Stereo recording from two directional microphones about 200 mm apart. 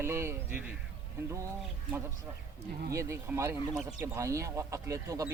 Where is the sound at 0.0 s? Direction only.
15° right (ahead or behind).